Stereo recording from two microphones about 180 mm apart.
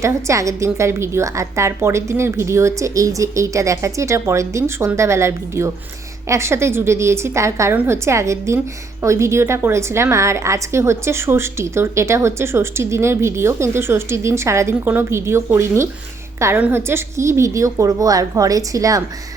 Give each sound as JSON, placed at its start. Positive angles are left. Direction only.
{"t": 0.0, "sound": "a woman's voice", "side_deg": -15}